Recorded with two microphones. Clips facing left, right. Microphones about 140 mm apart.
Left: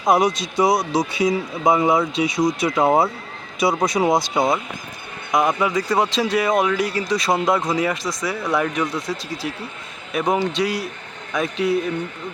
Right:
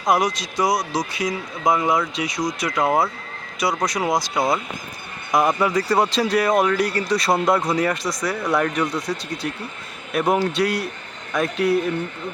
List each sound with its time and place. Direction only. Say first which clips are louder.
0.0 s speech: left 3 dB; 25° left (ahead or behind)
5.3 s speech: even; centre (ahead or behind)